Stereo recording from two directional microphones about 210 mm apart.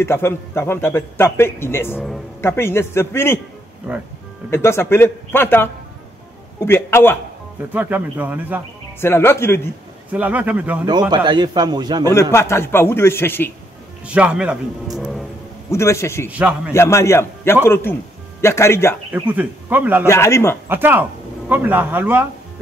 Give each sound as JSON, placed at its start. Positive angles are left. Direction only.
{"t": 0.0, "sound": "a man's voice", "side_deg": 10}
{"t": 4.5, "sound": "a man's voice", "side_deg": 10}
{"t": 7.7, "sound": "speech", "side_deg": -10}
{"t": 9.0, "sound": "a man's voice", "side_deg": 10}
{"t": 10.1, "sound": "speech", "side_deg": -5}
{"t": 10.9, "sound": "a man's voice", "side_deg": -20}
{"t": 12.1, "sound": "a man's voice", "side_deg": 15}
{"t": 14.0, "sound": "speech", "side_deg": -5}
{"t": 15.7, "sound": "a man's voice", "side_deg": 15}
{"t": 16.3, "sound": "speech", "side_deg": -5}
{"t": 16.7, "sound": "a man's voice", "side_deg": 15}
{"t": 19.1, "sound": "speech", "side_deg": -10}
{"t": 20.1, "sound": "a man's voice", "side_deg": 15}
{"t": 20.6, "sound": "speech", "side_deg": -10}